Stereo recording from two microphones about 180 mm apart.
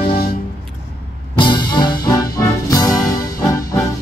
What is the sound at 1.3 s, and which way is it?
Music, 25° left (ahead or behind).